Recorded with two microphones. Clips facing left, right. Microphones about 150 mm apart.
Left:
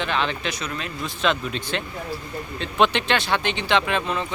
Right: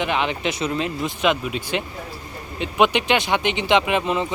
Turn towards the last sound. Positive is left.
turn(degrees=-20)  # may be behind; listen again after turning